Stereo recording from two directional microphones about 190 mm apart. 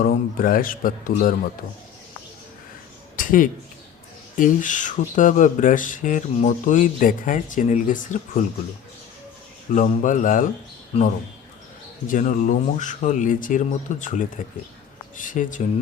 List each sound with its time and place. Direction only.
0.0 s speech: 50° left (ahead or behind)
3.2 s a sound: 45° left (ahead or behind)
4.4 s speech: 45° left (ahead or behind)
9.7 s speech: 40° left (ahead or behind)
10.9 s speech: 35° left (ahead or behind)